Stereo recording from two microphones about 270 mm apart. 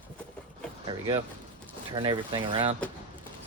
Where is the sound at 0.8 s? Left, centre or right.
Centre.